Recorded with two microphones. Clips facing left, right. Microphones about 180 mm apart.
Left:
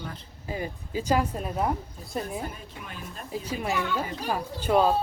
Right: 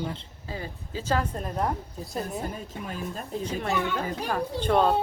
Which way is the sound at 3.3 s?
5° left (ahead or behind).